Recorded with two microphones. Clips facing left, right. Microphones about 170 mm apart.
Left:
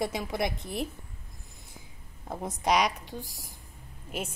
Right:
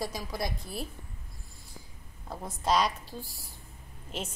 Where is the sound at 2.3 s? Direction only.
20° left (ahead or behind).